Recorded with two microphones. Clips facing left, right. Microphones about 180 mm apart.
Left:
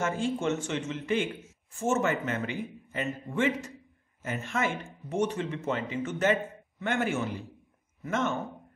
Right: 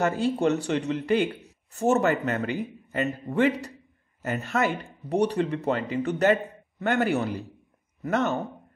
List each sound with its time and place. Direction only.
0.0 s speech: 40° right (ahead or behind)